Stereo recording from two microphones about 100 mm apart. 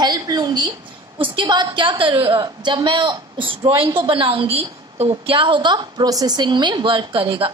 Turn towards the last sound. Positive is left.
turn(degrees=-60)  # may be behind; listen again after turning